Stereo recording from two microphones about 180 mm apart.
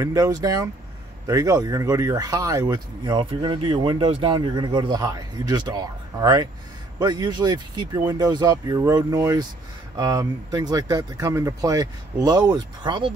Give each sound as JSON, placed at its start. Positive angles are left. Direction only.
{"t": 0.0, "sound": "speech", "side_deg": -20}